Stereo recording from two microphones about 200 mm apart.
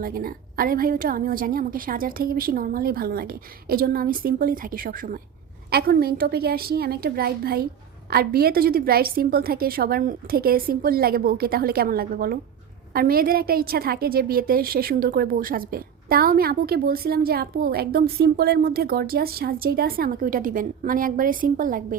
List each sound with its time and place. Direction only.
0.0 s a woman's voice: 45° right (ahead or behind)